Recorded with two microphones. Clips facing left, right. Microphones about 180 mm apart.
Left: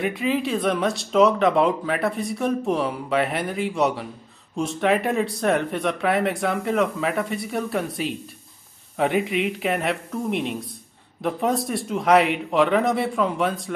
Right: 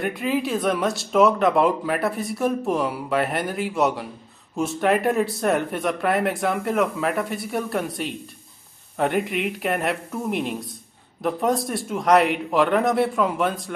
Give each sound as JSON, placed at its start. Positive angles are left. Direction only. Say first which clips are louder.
{"t": 0.0, "sound": "speech", "louder": "left 1 dB", "side_deg": 0}